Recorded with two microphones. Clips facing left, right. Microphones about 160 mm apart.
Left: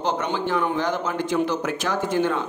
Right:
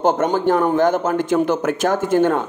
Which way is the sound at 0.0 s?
45° right (ahead or behind).